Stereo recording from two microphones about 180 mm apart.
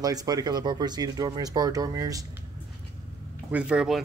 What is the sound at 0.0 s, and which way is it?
Speech, 20° right (ahead or behind).